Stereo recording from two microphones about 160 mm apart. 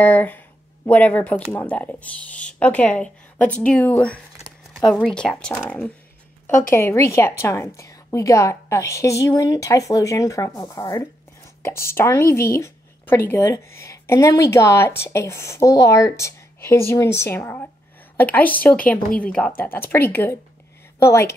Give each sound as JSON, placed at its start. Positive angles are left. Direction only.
{"t": 0.0, "sound": "a woman's voice", "side_deg": 10}
{"t": 6.7, "sound": "a woman's voice", "side_deg": 15}